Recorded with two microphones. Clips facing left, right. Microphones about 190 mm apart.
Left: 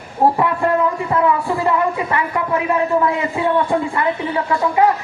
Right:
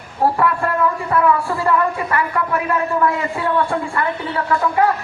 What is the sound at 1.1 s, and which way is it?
A woman's voice, 20° left (ahead or behind).